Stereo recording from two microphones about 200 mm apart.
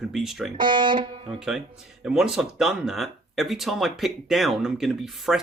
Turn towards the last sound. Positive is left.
turn(degrees=0)  # may be behind; listen again after turning